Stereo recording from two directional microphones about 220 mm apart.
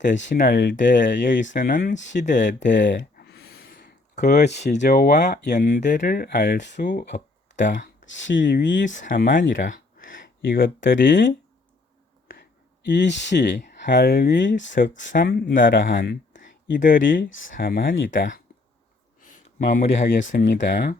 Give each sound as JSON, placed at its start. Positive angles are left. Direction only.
{"t": 0.3, "sound": "speech", "side_deg": 40}
{"t": 0.9, "sound": "speech", "side_deg": 35}
{"t": 2.7, "sound": "a sound", "side_deg": 55}
{"t": 4.6, "sound": "speech", "side_deg": 35}
{"t": 5.8, "sound": "speech", "side_deg": 35}
{"t": 8.0, "sound": "speech", "side_deg": 55}
{"t": 8.9, "sound": "speech", "side_deg": 35}
{"t": 10.8, "sound": "speech", "side_deg": 55}
{"t": 12.3, "sound": "a sound", "side_deg": 50}
{"t": 13.6, "sound": "speech", "side_deg": 35}
{"t": 14.7, "sound": "speech", "side_deg": 35}
{"t": 17.9, "sound": "speech", "side_deg": 55}
{"t": 19.2, "sound": "speech", "side_deg": 35}
{"t": 20.4, "sound": "speech", "side_deg": 50}